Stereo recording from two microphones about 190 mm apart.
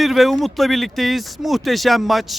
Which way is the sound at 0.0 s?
Centre (ahead or behind).